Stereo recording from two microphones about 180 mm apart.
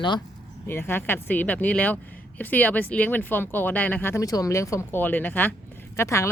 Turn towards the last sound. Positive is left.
turn(degrees=15)  # may be behind; listen again after turning